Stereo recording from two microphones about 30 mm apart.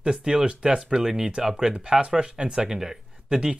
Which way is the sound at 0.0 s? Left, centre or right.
Right.